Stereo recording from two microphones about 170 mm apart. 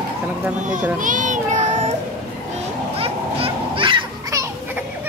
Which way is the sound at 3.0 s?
35° right (ahead or behind).